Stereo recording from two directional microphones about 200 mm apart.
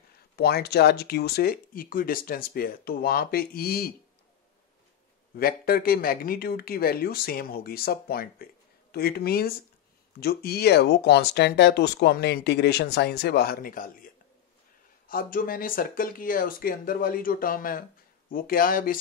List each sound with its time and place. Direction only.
0.4 s speech: 50° left (ahead or behind)
5.3 s speech: 50° left (ahead or behind)